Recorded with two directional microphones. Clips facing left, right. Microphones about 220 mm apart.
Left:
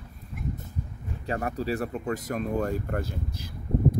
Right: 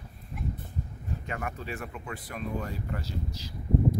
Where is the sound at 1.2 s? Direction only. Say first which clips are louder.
Left 9 dB; 35° left (ahead or behind).